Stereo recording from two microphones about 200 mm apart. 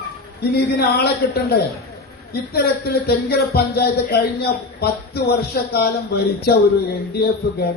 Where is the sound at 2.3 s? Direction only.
50° left (ahead or behind).